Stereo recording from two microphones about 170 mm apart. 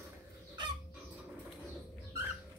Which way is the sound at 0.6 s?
25° right (ahead or behind).